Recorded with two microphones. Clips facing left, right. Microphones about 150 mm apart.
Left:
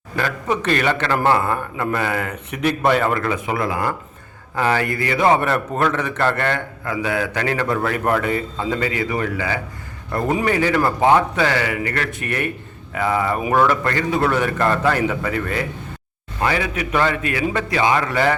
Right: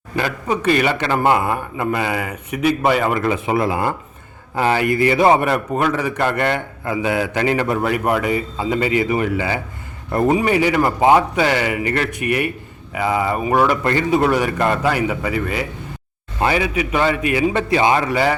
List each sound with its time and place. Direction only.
0.4 s a man's voice: 10° right (ahead or behind)
3.2 s a man's voice: 25° right (ahead or behind); by 15.6 s 5° right (ahead or behind)
16.4 s a man's voice: 15° right (ahead or behind)
18.1 s a man's voice: 10° right (ahead or behind)